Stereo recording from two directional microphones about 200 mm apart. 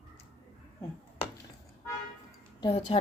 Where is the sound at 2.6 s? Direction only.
30° left (ahead or behind).